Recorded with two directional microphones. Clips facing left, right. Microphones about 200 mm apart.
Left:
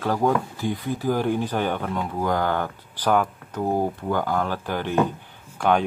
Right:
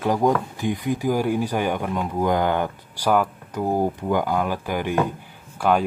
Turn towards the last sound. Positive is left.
turn(degrees=-5)  # may be behind; listen again after turning